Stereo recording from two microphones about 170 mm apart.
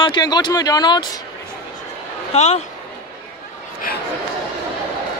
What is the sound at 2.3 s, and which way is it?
Speech, 40° left (ahead or behind).